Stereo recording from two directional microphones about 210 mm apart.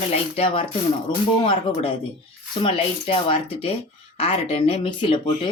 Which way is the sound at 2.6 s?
25° left (ahead or behind).